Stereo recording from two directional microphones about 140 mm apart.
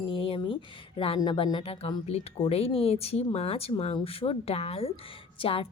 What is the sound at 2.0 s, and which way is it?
A woman's voice, 45° left (ahead or behind).